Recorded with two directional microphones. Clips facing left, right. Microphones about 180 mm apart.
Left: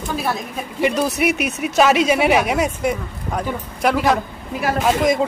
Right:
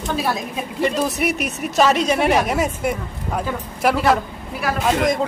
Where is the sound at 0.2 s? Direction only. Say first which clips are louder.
Right 1 dB; centre (ahead or behind).